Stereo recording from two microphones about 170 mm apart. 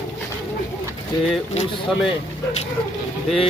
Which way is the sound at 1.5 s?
40° left (ahead or behind).